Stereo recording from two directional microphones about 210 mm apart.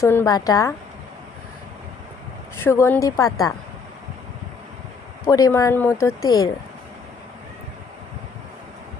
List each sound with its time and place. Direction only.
0.0 s speech: 10° left (ahead or behind)
2.6 s speech: 10° left (ahead or behind)
5.2 s speech: 15° left (ahead or behind)